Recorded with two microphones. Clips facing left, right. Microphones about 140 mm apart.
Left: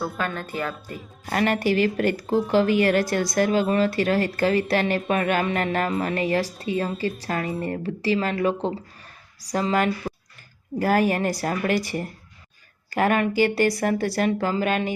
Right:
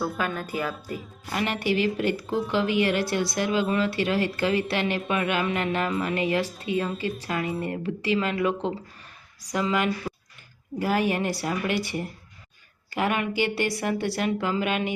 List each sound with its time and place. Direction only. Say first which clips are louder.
0.0 s a woman's voice: even; centre (ahead or behind)
1.2 s speech: left 6 dB; 45° left (ahead or behind)